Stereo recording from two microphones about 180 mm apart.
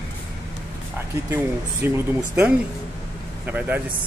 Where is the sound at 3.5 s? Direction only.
10° right (ahead or behind).